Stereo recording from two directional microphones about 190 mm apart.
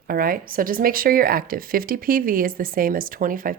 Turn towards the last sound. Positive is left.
turn(degrees=-45)  # may be behind; listen again after turning